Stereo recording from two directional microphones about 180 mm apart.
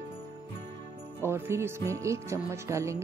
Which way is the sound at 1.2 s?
15° right (ahead or behind).